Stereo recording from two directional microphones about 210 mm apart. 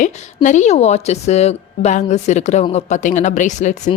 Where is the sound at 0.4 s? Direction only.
35° left (ahead or behind).